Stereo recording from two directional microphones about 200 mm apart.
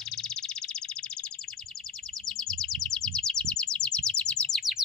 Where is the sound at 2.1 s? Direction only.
Centre (ahead or behind).